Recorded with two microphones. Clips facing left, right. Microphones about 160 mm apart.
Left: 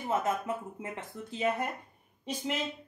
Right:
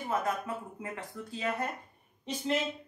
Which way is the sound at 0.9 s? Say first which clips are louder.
Left 1 dB; 20° left (ahead or behind).